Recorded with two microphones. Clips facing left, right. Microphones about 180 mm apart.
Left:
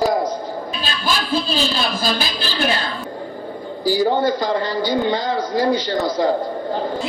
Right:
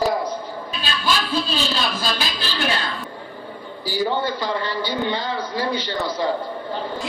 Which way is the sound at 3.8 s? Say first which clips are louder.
Left 6 dB; 45° left (ahead or behind).